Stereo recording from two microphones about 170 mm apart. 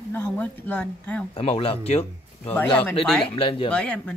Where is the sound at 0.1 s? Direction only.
10° left (ahead or behind).